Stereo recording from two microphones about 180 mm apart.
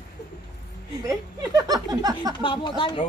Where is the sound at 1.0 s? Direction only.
20° right (ahead or behind).